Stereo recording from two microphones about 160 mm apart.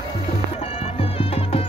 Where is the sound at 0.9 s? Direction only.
35° left (ahead or behind).